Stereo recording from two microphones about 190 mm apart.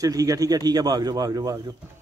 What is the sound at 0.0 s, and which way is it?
A man's voice, 20° right (ahead or behind).